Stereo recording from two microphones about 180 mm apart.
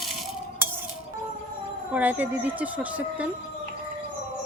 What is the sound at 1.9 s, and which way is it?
Speech, 10° right (ahead or behind).